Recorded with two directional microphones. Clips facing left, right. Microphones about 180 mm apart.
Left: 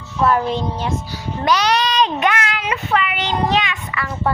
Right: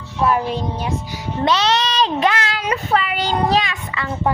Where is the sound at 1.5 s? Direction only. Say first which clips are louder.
Left 1 dB; 25° right (ahead or behind).